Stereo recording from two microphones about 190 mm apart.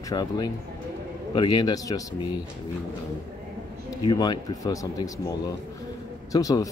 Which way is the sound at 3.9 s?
20° left (ahead or behind).